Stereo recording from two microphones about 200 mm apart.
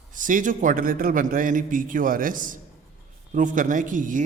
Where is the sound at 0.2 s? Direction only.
40° right (ahead or behind).